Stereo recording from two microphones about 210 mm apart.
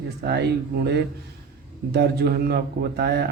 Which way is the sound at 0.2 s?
50° right (ahead or behind).